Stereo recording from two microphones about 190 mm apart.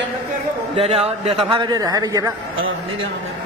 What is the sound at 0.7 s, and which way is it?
A man's voice, 35° right (ahead or behind).